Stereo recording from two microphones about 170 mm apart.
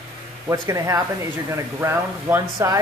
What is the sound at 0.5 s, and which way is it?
A woman's voice, 20° right (ahead or behind).